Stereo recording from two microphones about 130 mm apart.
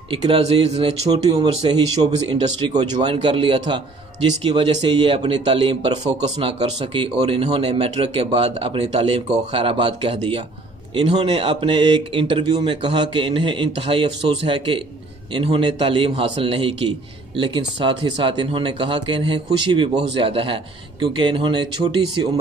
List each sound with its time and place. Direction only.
0.1 s speech: 40° right (ahead or behind)
1.1 s speech: 30° right (ahead or behind)